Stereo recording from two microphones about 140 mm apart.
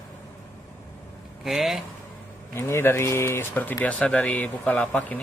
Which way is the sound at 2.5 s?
15° left (ahead or behind).